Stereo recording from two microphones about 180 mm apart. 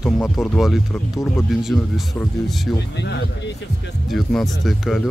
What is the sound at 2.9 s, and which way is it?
Speech, 70° left (ahead or behind).